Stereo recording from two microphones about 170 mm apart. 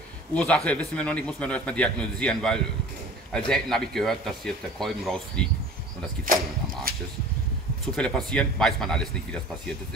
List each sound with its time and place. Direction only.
0.3 s speech: 5° left (ahead or behind)
6.3 s speech: 55° right (ahead or behind)
7.9 s speech: 5° left (ahead or behind)